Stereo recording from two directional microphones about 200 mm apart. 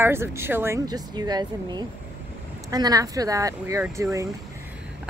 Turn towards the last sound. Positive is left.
turn(degrees=-15)  # may be behind; listen again after turning